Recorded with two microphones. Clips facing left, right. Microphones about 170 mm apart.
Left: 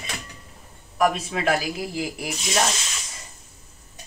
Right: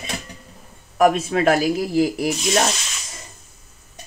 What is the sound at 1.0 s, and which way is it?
Speech, 50° right (ahead or behind).